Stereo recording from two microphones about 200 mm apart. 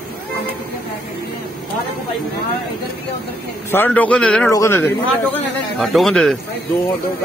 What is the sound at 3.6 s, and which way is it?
A man's voice, 10° left (ahead or behind).